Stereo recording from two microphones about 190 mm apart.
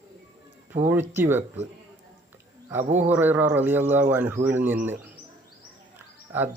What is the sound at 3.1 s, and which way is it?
Speech, 10° right (ahead or behind).